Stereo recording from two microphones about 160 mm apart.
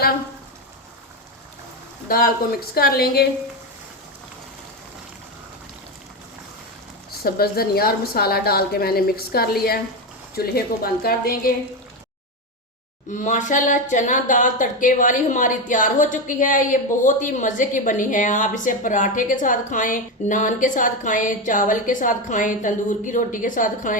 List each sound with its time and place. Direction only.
2.0 s a woman's voice: 65° left (ahead or behind)
7.2 s a woman's voice: 70° left (ahead or behind)
13.1 s speech: 50° left (ahead or behind)